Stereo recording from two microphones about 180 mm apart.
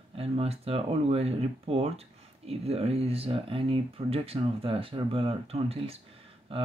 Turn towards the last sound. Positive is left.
turn(degrees=-30)  # may be behind; listen again after turning